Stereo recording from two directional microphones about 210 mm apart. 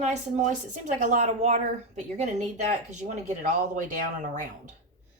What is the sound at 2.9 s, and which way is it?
Speech, 35° right (ahead or behind).